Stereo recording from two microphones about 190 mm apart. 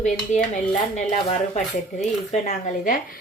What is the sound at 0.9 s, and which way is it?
A woman's voice, 35° left (ahead or behind).